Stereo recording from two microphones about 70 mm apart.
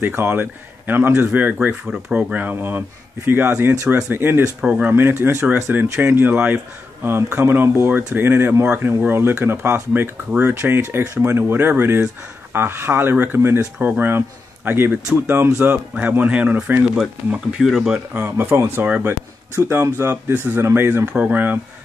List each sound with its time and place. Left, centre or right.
0.0 s speech: right
1.9 s speech: centre
2.3 s speech: right
4.6 s speech: centre
4.8 s speech: right; by 18.0 s centre
18.1 s speech: right
21.1 s speech: right